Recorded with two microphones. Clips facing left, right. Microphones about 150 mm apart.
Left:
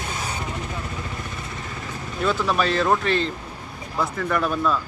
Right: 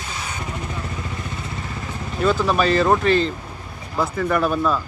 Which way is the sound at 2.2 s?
Centre (ahead or behind).